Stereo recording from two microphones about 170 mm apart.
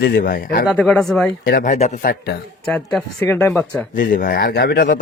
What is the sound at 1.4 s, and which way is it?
Speech, 55° left (ahead or behind).